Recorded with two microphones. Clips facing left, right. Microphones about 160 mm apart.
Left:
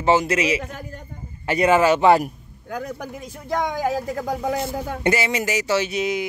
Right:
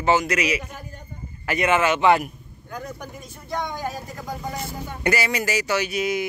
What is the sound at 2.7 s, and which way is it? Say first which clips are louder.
Speech: left 5 dB; 90° left.